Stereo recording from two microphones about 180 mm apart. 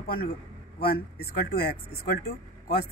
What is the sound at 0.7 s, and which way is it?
Speech, 60° left (ahead or behind).